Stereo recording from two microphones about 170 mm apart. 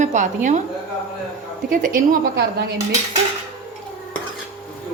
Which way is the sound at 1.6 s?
50° right (ahead or behind).